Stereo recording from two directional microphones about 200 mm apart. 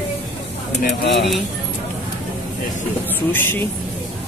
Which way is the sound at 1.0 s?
60° left (ahead or behind).